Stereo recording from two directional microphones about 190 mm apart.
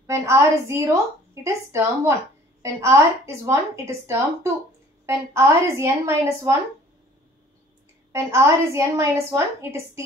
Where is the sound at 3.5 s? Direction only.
15° right (ahead or behind).